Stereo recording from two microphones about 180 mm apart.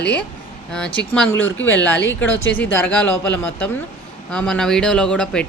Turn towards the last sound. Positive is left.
turn(degrees=5)  # may be behind; listen again after turning